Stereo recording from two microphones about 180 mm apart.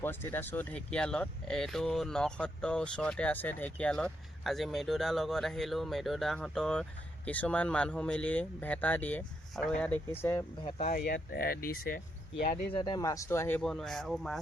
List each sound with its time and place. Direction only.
0.0 s speech: 10° left (ahead or behind)
10.6 s speech: 30° left (ahead or behind)
10.9 s speech: 60° left (ahead or behind)
12.7 s speech: 25° left (ahead or behind)
13.6 s speech: centre (ahead or behind)